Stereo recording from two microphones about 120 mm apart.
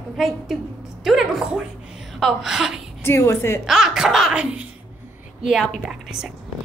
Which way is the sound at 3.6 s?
5° right (ahead or behind).